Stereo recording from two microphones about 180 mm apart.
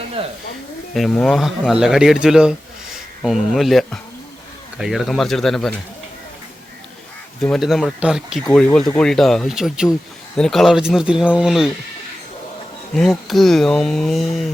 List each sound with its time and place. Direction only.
0.2 s speech: 30° right (ahead or behind)
0.9 s speech: centre (ahead or behind)
7.4 s speech: centre (ahead or behind)
12.9 s speech: centre (ahead or behind)